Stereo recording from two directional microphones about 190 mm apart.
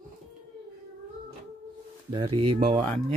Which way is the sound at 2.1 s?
25° right (ahead or behind).